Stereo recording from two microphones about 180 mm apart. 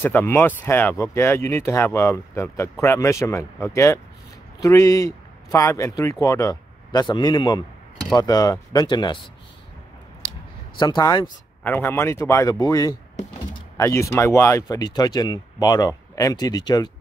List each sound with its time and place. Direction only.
0.0 s speech: 10° left (ahead or behind)
10.8 s speech: 25° left (ahead or behind)
11.6 s speech: 10° left (ahead or behind)